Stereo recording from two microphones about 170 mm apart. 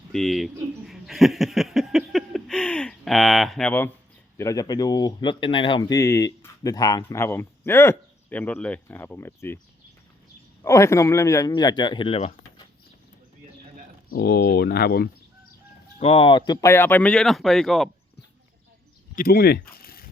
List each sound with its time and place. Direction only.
0.1 s a sound: centre (ahead or behind)
4.4 s speech: 20° left (ahead or behind)
10.6 s speech: 15° left (ahead or behind); by 12.6 s 35° left (ahead or behind)
14.1 s speech: 70° left (ahead or behind)
16.0 s speech: 35° left (ahead or behind)
16.5 s speech: 20° left (ahead or behind); by 17.8 s centre (ahead or behind)
19.1 s a sound: 55° left (ahead or behind)